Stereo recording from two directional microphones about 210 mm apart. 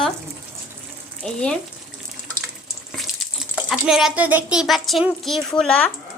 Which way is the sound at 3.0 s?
Centre (ahead or behind).